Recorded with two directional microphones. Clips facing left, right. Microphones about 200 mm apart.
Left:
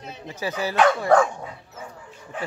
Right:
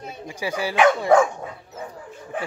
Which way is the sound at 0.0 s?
10° right (ahead or behind).